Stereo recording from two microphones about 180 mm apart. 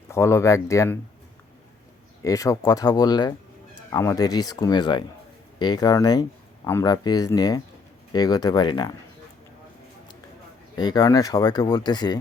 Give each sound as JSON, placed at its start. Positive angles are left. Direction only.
{"t": 0.1, "sound": "speech", "side_deg": 15}
{"t": 2.2, "sound": "speech", "side_deg": 20}
{"t": 10.8, "sound": "speech", "side_deg": 20}